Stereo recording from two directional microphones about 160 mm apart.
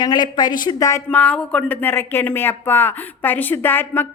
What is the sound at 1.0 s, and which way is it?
Speech, 10° left (ahead or behind).